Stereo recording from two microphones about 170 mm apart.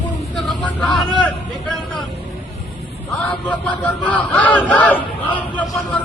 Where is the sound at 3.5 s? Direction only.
10° left (ahead or behind).